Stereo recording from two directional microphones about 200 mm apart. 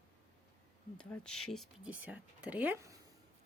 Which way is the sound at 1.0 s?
5° left (ahead or behind).